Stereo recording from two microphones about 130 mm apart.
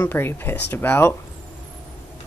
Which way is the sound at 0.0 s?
15° left (ahead or behind).